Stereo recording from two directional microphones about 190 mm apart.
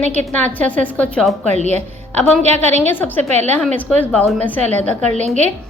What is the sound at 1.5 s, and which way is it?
Speech, 35° right (ahead or behind).